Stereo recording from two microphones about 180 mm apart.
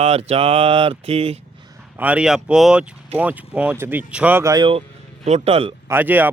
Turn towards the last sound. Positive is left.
turn(degrees=-10)  # may be behind; listen again after turning